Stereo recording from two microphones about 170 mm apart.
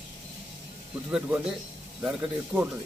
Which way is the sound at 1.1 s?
5° right (ahead or behind).